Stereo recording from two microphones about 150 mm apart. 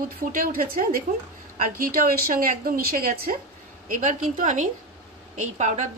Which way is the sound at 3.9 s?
60° right (ahead or behind).